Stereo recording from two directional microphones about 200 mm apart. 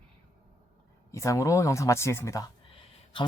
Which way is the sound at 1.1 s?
15° left (ahead or behind).